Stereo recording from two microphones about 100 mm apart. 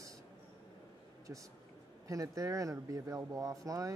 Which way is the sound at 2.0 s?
35° right (ahead or behind).